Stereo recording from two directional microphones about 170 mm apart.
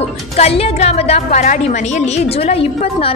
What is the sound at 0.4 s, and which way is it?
A woman's voice, 35° left (ahead or behind).